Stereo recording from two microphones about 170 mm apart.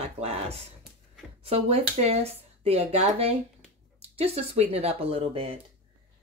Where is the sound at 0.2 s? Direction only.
35° right (ahead or behind).